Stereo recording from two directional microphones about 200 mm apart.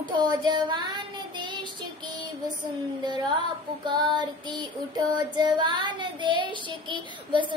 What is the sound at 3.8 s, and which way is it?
Child singing, 20° right (ahead or behind).